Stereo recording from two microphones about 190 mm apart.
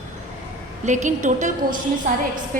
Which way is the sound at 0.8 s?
40° right (ahead or behind).